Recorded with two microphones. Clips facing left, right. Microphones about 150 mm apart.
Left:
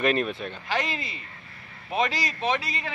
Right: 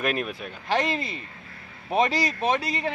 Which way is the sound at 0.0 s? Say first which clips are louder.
Left 3 dB; 5° right (ahead or behind).